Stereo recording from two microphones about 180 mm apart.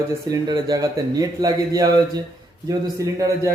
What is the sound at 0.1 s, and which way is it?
Speech, 20° right (ahead or behind).